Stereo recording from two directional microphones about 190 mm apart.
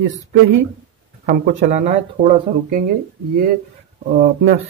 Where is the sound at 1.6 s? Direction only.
40° right (ahead or behind).